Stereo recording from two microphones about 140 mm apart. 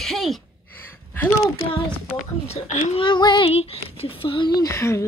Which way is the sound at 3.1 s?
35° left (ahead or behind).